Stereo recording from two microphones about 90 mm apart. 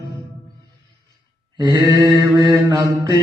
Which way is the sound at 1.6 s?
45° right (ahead or behind).